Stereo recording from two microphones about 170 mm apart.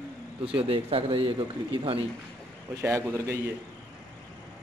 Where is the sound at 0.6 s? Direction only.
35° right (ahead or behind).